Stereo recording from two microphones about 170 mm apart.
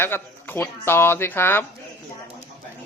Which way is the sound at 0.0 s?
15° left (ahead or behind).